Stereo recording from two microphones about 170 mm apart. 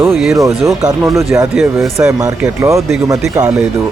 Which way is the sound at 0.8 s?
15° right (ahead or behind).